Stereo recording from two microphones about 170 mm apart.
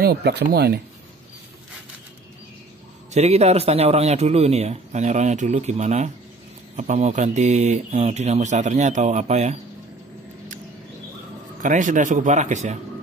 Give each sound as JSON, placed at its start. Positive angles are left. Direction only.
{"t": 0.0, "sound": "speech", "side_deg": -75}
{"t": 3.1, "sound": "a man's voice", "side_deg": -40}
{"t": 11.6, "sound": "speech", "side_deg": -50}